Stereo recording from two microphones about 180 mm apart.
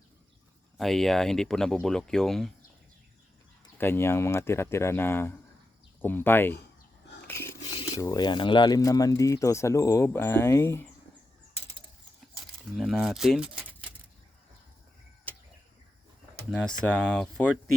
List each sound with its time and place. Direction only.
0.8 s speech: centre (ahead or behind)
3.8 s speech: 15° left (ahead or behind)
7.3 s a sound: 15° left (ahead or behind)
7.9 s speech: 20° left (ahead or behind)
12.7 s speech: centre (ahead or behind)
16.5 s speech: 5° left (ahead or behind)